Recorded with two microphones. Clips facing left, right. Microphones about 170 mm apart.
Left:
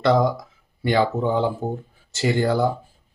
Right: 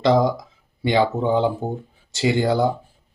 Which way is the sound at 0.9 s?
20° right (ahead or behind).